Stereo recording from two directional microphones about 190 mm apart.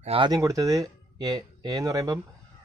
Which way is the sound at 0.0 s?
25° right (ahead or behind).